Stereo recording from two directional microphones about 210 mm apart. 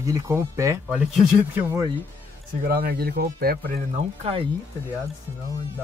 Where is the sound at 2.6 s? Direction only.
45° right (ahead or behind).